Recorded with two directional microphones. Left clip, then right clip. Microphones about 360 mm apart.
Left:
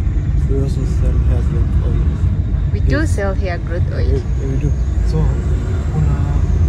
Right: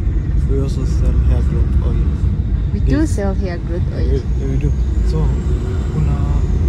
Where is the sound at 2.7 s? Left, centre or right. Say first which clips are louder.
Right 1 dB; centre.